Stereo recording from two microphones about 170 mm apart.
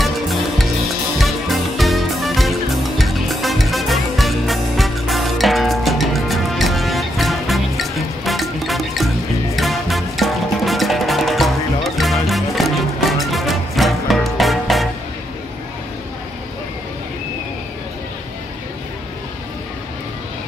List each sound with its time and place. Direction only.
0.0 s music: centre (ahead or behind)